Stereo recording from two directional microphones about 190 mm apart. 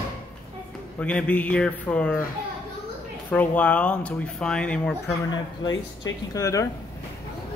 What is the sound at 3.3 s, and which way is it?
Speech, 10° left (ahead or behind).